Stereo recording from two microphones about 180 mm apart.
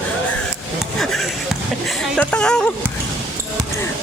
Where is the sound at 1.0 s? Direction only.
Centre (ahead or behind).